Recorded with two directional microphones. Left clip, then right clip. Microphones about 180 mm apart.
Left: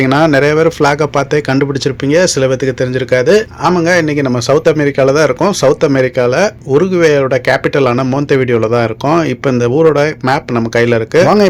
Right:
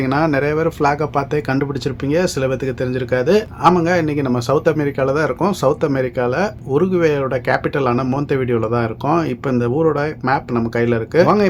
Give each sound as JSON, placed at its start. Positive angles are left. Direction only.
{"t": 0.0, "sound": "speech", "side_deg": 40}